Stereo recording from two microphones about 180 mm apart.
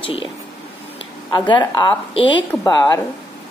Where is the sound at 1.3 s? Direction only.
25° left (ahead or behind).